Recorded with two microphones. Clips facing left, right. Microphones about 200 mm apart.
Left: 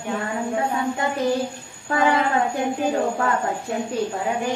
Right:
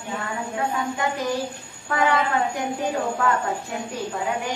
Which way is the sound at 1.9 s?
25° left (ahead or behind).